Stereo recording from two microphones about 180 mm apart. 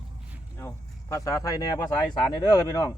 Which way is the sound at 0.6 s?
15° left (ahead or behind).